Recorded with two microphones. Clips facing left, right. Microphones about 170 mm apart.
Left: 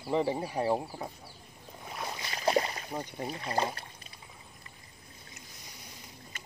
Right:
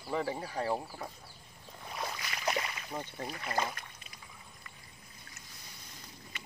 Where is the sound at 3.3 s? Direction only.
30° left (ahead or behind).